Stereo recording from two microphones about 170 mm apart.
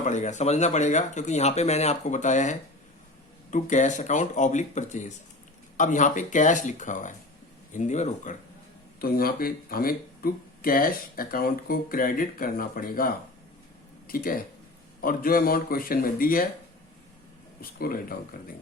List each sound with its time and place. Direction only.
0.0 s speech: 45° left (ahead or behind)
9.0 s speech: 60° left (ahead or behind)
17.6 s speech: 60° left (ahead or behind)